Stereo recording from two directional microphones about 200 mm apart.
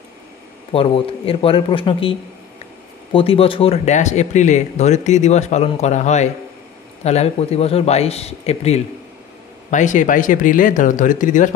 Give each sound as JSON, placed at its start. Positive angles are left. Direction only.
{"t": 0.7, "sound": "speech", "side_deg": 25}